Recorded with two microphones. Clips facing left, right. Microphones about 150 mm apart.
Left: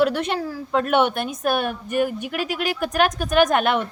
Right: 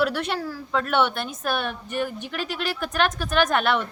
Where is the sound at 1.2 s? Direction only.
5° left (ahead or behind).